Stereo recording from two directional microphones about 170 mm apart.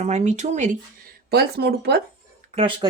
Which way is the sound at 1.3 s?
75° right (ahead or behind).